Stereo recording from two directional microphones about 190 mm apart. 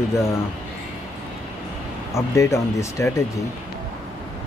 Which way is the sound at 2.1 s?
15° left (ahead or behind).